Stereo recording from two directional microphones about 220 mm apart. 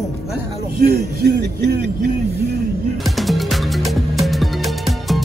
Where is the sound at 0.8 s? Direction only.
45° right (ahead or behind).